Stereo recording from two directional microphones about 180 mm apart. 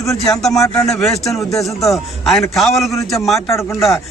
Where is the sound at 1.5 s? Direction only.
20° left (ahead or behind).